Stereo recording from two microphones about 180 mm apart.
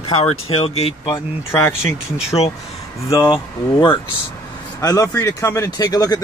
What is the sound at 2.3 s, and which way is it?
Speech, 30° left (ahead or behind).